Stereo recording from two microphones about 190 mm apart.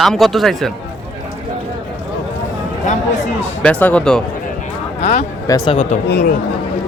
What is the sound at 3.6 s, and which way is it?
Speech, 10° left (ahead or behind).